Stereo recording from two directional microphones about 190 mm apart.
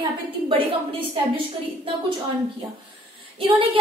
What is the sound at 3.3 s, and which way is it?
Speech, 30° right (ahead or behind).